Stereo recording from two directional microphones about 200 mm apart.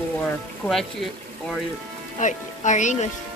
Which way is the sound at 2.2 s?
40° left (ahead or behind).